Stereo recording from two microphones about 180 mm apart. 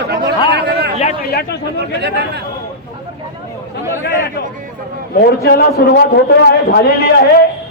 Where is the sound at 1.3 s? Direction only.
60° left (ahead or behind).